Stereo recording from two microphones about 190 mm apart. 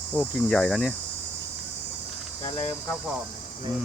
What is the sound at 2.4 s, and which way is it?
Cricket, 30° left (ahead or behind).